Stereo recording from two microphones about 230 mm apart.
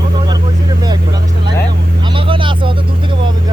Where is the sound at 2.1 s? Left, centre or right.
Right.